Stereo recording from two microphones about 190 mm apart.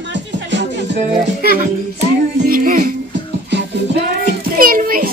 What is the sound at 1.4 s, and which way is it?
Music, 50° right (ahead or behind).